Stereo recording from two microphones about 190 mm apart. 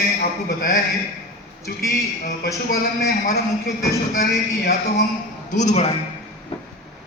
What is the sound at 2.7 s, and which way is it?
A man's voice, 55° left (ahead or behind).